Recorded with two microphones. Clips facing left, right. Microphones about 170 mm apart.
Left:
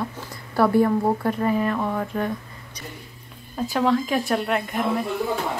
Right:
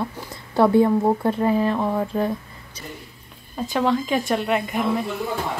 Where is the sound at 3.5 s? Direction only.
Centre (ahead or behind).